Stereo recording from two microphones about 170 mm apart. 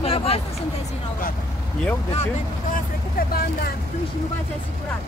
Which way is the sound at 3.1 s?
60° left (ahead or behind).